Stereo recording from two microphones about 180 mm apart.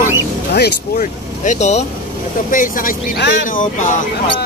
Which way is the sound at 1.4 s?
40° left (ahead or behind).